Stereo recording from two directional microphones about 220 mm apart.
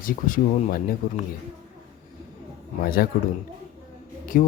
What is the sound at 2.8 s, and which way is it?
Mantra, 45° left (ahead or behind).